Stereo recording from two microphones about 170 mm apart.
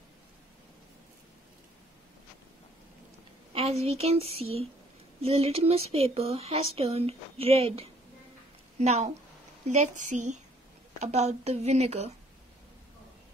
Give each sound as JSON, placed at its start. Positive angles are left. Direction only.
{"t": 4.0, "sound": "a woman's voice", "side_deg": -35}